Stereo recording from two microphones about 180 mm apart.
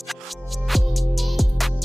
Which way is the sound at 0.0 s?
Centre (ahead or behind).